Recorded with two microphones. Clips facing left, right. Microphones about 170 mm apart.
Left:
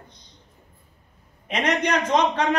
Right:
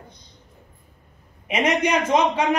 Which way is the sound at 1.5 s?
10° right (ahead or behind).